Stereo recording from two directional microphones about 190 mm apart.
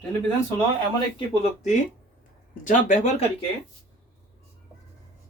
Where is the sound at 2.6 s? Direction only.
40° left (ahead or behind).